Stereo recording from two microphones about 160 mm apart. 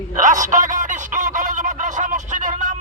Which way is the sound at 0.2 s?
50° right (ahead or behind).